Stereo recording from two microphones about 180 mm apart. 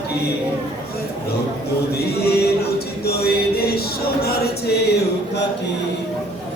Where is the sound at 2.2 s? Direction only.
60° left (ahead or behind).